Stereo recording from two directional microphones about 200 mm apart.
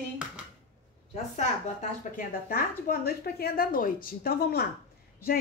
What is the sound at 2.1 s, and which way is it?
A woman's voice, 45° left (ahead or behind).